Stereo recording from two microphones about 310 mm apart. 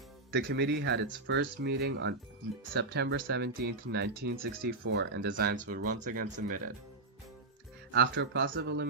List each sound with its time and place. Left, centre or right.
0.3 s speech: right
7.9 s speech: right